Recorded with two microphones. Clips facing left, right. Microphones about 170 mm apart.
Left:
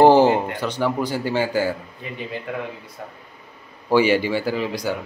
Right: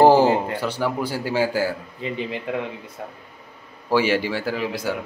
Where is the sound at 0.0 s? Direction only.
5° right (ahead or behind).